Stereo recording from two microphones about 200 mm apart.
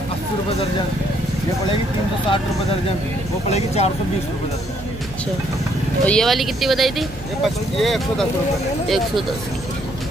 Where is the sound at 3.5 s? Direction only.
30° left (ahead or behind).